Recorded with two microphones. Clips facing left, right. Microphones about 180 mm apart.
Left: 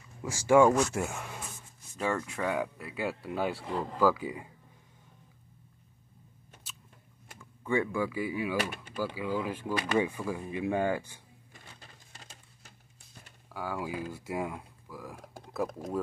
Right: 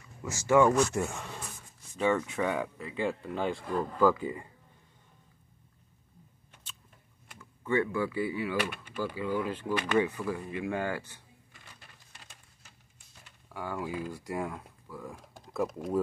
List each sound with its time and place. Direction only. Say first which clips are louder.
0.2 s speech: left 2 dB; 10° left (ahead or behind)
3.6 s speech: right 2 dB; 20° left (ahead or behind)
4.0 s speech: right 1 dB; 5° left (ahead or behind)
7.3 s speech: right 1 dB; 10° left (ahead or behind)
13.5 s speech: even; 5° left (ahead or behind)